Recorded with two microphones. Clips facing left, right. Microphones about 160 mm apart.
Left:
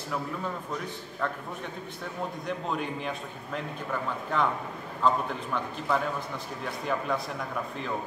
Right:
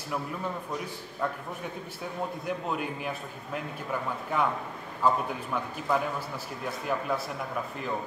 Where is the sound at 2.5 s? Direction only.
5° right (ahead or behind).